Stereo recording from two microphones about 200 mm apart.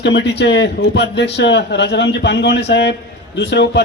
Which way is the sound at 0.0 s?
60° left (ahead or behind).